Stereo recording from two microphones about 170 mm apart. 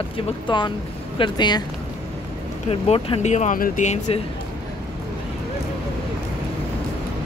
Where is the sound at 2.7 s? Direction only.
35° left (ahead or behind).